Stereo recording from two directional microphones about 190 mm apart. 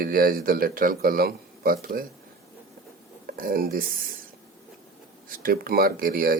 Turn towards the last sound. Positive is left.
turn(degrees=-50)  # may be behind; listen again after turning